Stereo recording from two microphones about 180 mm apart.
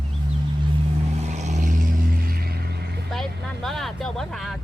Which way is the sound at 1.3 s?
40° right (ahead or behind).